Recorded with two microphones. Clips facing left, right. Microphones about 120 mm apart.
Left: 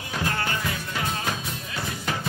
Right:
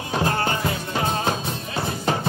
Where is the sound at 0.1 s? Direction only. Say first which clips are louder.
Right 5 dB; 35° right (ahead or behind).